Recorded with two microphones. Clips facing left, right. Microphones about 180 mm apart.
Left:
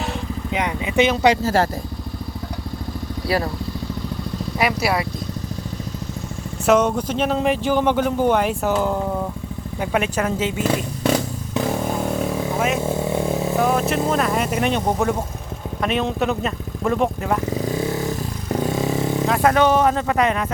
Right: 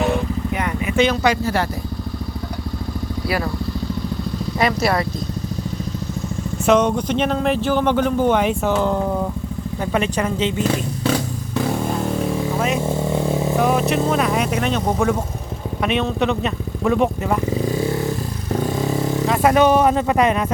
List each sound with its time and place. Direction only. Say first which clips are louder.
0.5 s vehicle: left 1 dB; 20° left (ahead or behind)
4.6 s speech: right 2 dB; 5° left (ahead or behind)
6.7 s speech: right 1 dB; 5° left (ahead or behind)
12.5 s vehicle: left 1 dB; 5° left (ahead or behind)
13.6 s speech: right 1 dB; centre (ahead or behind)
16.2 s speech: right 2 dB; centre (ahead or behind)
19.3 s speech: right 2 dB; 10° right (ahead or behind)